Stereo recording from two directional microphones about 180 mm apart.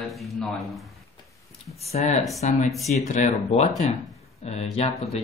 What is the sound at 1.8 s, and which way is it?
Speech, 35° left (ahead or behind).